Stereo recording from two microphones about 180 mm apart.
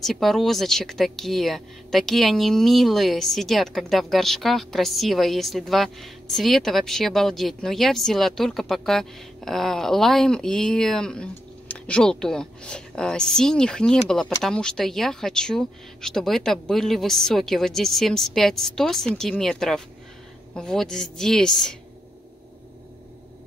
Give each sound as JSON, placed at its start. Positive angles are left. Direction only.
{"t": 0.0, "sound": "speech", "side_deg": 0}